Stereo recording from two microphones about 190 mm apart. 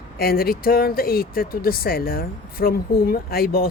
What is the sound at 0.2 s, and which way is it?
Speech, 50° left (ahead or behind).